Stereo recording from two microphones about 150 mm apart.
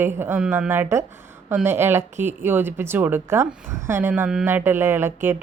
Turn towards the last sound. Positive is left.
turn(degrees=-15)  # may be behind; listen again after turning